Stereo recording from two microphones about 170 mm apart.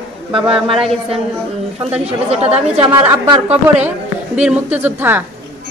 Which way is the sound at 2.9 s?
15° right (ahead or behind).